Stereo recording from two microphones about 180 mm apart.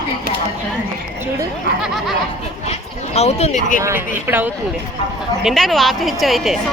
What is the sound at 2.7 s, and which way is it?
Speech, 35° left (ahead or behind).